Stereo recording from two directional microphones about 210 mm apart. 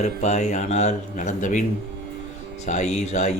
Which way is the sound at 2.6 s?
35° left (ahead or behind).